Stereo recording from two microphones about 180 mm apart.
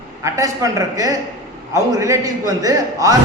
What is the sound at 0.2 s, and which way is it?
A man's voice, 15° right (ahead or behind).